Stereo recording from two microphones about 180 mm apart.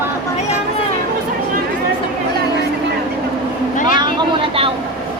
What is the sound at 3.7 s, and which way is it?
Vehicle, 50° left (ahead or behind).